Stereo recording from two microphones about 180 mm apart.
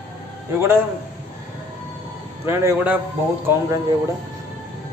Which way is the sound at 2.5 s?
15° right (ahead or behind).